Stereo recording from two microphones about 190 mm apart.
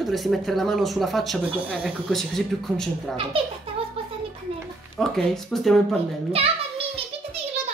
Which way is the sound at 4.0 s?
30° right (ahead or behind).